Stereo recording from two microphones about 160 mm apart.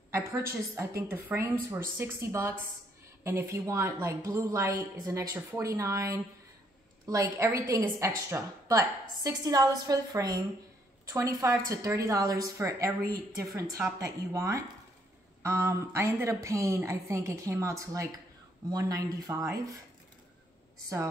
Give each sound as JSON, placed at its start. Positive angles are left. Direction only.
{"t": 0.1, "sound": "a woman's voice", "side_deg": -15}